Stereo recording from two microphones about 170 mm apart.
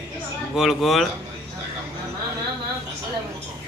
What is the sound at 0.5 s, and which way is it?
Speech, centre (ahead or behind).